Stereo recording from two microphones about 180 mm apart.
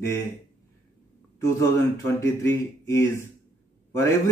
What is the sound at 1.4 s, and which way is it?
Speech, 15° left (ahead or behind).